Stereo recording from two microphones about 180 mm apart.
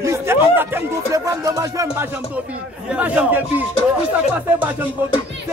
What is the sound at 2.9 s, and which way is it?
Speech, 5° right (ahead or behind).